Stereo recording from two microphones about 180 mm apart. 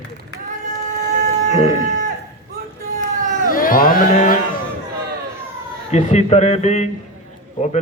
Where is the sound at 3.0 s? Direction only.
45° right (ahead or behind).